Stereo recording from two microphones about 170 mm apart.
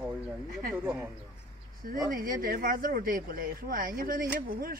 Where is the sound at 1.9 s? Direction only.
55° right (ahead or behind).